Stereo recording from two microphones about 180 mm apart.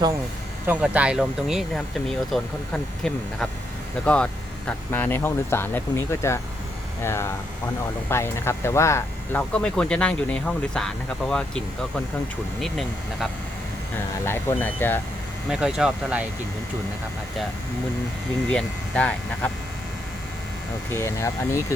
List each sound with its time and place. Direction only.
0.7 s speech: 5° right (ahead or behind)
14.3 s speech: 10° left (ahead or behind)
15.4 s speech: 5° right (ahead or behind)
18.5 s speech: 5° left (ahead or behind)
20.9 s speech: 15° left (ahead or behind)